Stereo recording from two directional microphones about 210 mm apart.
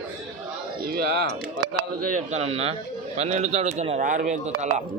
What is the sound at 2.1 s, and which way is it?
A man's voice, 35° right (ahead or behind).